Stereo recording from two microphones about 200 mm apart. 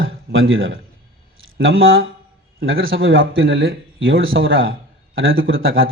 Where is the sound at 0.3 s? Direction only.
80° right.